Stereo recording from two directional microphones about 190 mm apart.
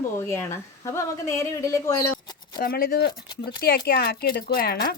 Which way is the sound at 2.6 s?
50° left (ahead or behind).